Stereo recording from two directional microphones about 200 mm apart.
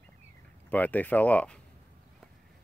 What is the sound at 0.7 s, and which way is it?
Speech, 10° left (ahead or behind).